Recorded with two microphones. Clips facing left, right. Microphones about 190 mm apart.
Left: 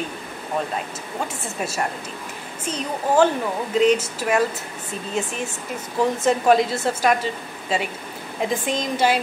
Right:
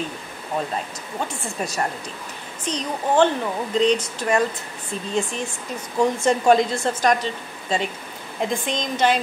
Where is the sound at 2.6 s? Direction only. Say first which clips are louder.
Even; 5° left (ahead or behind).